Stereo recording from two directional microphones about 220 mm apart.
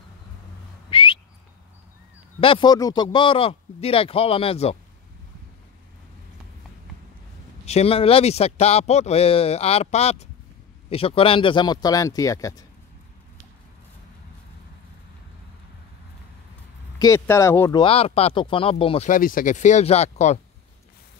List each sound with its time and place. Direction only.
0.8 s whistling: 25° left (ahead or behind)
2.4 s speech: 20° left (ahead or behind)
7.6 s speech: 30° left (ahead or behind)
17.0 s speech: 15° left (ahead or behind)
17.8 s speech: 25° left (ahead or behind)
19.0 s speech: 40° left (ahead or behind)